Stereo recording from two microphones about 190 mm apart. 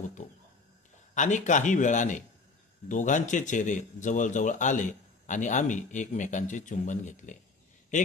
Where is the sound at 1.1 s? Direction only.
40° left (ahead or behind).